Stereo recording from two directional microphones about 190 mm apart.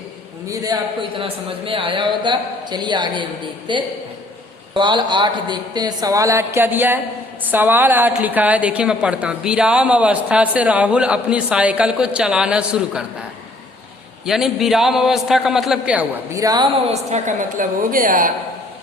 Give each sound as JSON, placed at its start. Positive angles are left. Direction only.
{"t": 0.4, "sound": "a man's voice", "side_deg": -20}
{"t": 14.3, "sound": "a woman's voice", "side_deg": 0}
{"t": 16.8, "sound": "a woman's voice", "side_deg": -35}